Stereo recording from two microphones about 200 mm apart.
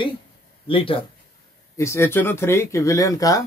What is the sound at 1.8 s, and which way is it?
Speech, 15° left (ahead or behind).